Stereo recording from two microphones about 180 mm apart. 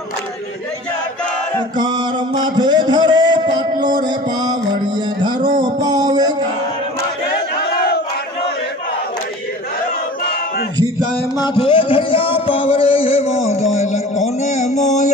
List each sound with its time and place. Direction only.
1.8 s a sound: 25° right (ahead or behind)
5.6 s music: 25° right (ahead or behind)
7.7 s battle cry: 60° left (ahead or behind)
11.3 s music: 25° left (ahead or behind); by 15.1 s 40° left (ahead or behind)